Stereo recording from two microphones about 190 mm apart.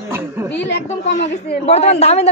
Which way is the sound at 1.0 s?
40° left (ahead or behind).